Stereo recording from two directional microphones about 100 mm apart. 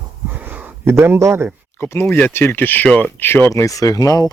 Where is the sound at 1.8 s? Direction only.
20° left (ahead or behind); by 4.3 s 35° left (ahead or behind).